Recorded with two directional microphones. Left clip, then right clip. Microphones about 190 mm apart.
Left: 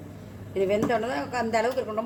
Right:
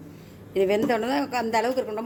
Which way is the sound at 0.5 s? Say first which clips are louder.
Right 2 dB; 55° right (ahead or behind).